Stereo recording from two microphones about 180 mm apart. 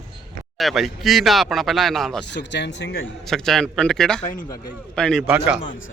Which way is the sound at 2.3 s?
75° left (ahead or behind).